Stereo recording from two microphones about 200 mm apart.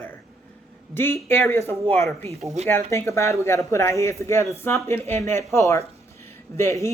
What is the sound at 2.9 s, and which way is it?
Speech, 15° left (ahead or behind).